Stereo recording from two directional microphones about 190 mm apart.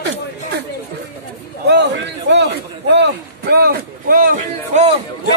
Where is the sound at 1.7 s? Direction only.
65° right (ahead or behind).